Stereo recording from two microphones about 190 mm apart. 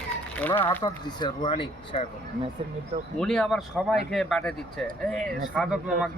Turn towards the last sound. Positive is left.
turn(degrees=-5)  # may be behind; listen again after turning